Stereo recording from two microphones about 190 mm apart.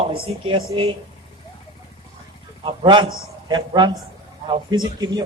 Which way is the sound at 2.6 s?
25° right (ahead or behind).